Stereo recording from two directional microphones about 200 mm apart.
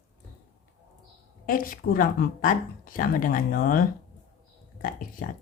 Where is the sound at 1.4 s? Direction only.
45° left (ahead or behind).